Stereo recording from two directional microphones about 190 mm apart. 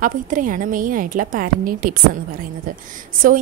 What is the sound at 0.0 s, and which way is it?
A woman's voice, 45° right (ahead or behind).